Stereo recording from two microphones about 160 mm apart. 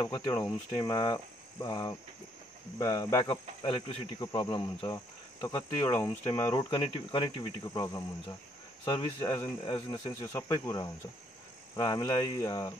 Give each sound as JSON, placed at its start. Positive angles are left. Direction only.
{"t": 0.0, "sound": "cricket", "side_deg": 25}
{"t": 3.3, "sound": "cricket", "side_deg": 30}
{"t": 6.7, "sound": "speech", "side_deg": 30}
{"t": 7.6, "sound": "cricket", "side_deg": 25}
{"t": 9.7, "sound": "speech", "side_deg": 30}
{"t": 10.1, "sound": "cricket", "side_deg": 15}